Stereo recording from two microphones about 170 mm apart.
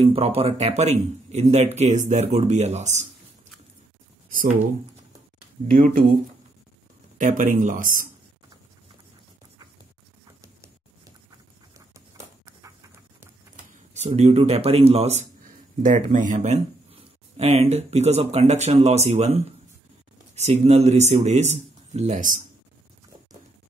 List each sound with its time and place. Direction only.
0.0 s speech: 35° right (ahead or behind)
5.8 s speech: 55° right (ahead or behind)
7.2 s speech: 50° right (ahead or behind)
12.4 s a sound: 15° right (ahead or behind)
13.9 s speech: 40° right (ahead or behind)
16.1 s speech: 50° right (ahead or behind)